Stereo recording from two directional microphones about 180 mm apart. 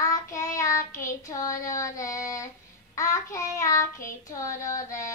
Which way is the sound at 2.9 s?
20° left (ahead or behind).